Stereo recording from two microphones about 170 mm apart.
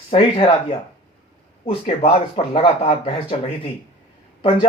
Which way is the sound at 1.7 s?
35° left (ahead or behind).